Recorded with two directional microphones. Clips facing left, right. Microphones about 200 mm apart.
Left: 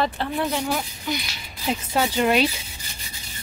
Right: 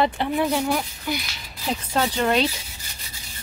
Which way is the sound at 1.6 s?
5° left (ahead or behind).